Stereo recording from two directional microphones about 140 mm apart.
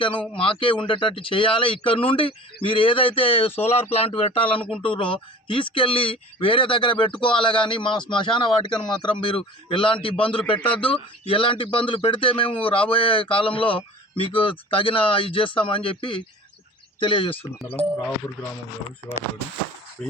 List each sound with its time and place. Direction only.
0.0 s speech: 35° left (ahead or behind)
20.0 s speech: centre (ahead or behind)